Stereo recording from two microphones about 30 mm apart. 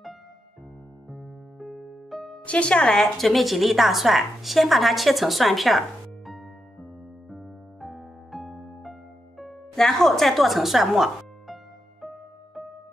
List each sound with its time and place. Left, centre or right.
1.1 s music: centre
2.4 s speech: left
3.2 s a woman's voice: centre
7.2 s music: centre
9.4 s music: centre
10.1 s music: centre